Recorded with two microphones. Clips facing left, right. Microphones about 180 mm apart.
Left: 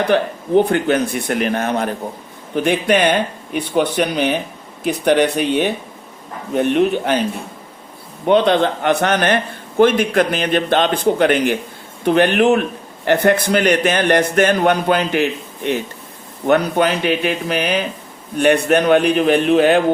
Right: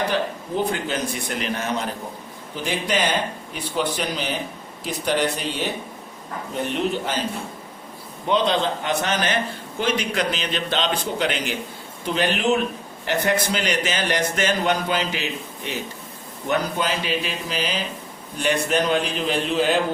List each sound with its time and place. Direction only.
0.1 s a man's voice: 60° left (ahead or behind)
8.3 s a man's voice: 60° left (ahead or behind)